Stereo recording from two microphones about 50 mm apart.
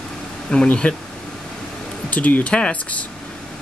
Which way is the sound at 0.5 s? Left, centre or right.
Centre.